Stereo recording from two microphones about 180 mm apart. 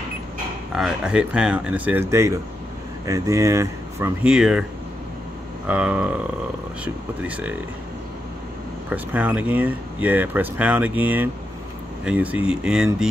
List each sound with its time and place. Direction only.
0.7 s speech: 5° right (ahead or behind)
4.2 s speech: 5° right (ahead or behind)
5.7 s speech: 5° right (ahead or behind)
8.9 s speech: 10° right (ahead or behind)